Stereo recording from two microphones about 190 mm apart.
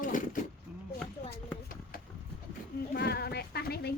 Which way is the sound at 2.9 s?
55° left (ahead or behind).